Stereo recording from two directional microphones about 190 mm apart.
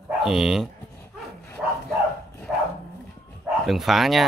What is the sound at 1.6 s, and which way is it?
Bow-wow, 5° right (ahead or behind).